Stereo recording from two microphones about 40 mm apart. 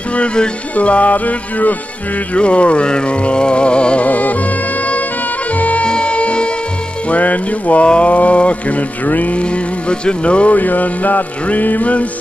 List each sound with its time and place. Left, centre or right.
0.1 s music: left
0.7 s a sound: left
2.3 s music: left
4.0 s music: left
5.9 s music: left
7.1 s a sound: left
9.4 s music: left
10.5 s music: left